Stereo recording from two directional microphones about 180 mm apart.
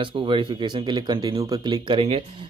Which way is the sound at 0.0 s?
25° right (ahead or behind).